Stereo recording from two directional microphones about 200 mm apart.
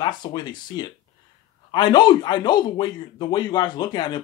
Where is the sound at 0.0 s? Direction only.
20° left (ahead or behind).